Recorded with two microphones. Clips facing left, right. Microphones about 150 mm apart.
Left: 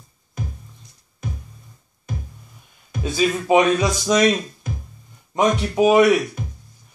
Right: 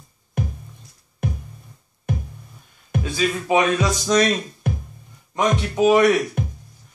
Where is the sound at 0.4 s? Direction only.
65° right (ahead or behind).